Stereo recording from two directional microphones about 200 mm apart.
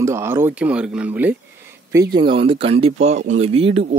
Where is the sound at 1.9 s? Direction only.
20° right (ahead or behind).